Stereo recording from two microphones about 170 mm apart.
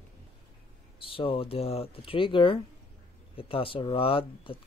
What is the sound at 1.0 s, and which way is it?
Speech, 30° left (ahead or behind).